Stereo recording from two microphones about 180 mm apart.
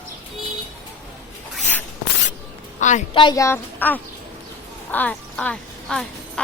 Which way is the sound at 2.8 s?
40° left (ahead or behind).